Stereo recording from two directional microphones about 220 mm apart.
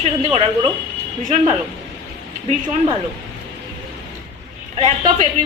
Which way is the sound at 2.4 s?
30° right (ahead or behind).